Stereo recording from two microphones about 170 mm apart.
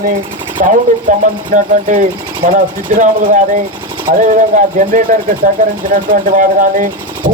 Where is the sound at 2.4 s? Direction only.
35° right (ahead or behind).